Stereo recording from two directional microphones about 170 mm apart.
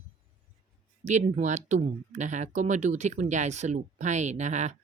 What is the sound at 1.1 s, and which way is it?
Speech, 45° right (ahead or behind).